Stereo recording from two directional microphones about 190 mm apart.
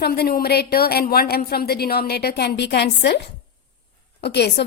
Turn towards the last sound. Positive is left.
turn(degrees=60)  # may be behind; listen again after turning